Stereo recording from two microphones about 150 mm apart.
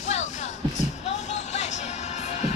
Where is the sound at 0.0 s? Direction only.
50° left (ahead or behind).